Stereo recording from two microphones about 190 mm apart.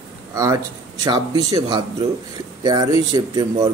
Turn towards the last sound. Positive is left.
turn(degrees=-20)  # may be behind; listen again after turning